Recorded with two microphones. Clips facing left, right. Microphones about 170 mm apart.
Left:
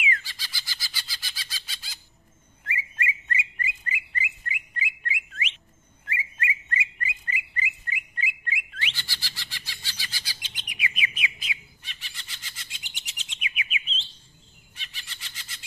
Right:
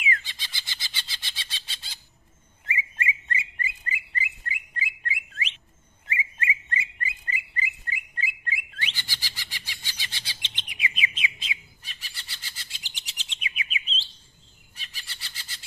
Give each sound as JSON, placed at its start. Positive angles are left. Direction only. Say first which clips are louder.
{"t": 0.2, "sound": "chicken", "louder": "even", "side_deg": -20}
{"t": 2.6, "sound": "bird", "louder": "right 1 dB", "side_deg": -20}
{"t": 9.0, "sound": "bird", "louder": "even", "side_deg": -15}
{"t": 11.8, "sound": "bird", "louder": "even", "side_deg": -40}
{"t": 14.8, "sound": "a sound", "louder": "even", "side_deg": -40}